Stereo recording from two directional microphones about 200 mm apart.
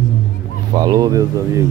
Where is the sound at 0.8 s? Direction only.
20° right (ahead or behind).